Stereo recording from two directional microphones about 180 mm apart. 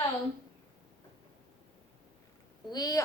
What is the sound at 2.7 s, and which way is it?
Speech, 20° left (ahead or behind).